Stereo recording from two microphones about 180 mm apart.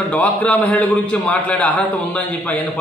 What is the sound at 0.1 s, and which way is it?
A man's voice, 10° left (ahead or behind).